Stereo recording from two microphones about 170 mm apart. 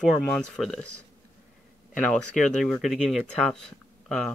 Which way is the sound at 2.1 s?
5° left (ahead or behind).